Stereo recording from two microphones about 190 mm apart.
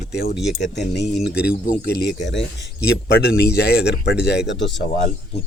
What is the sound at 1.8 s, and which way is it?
Speech, 55° left (ahead or behind).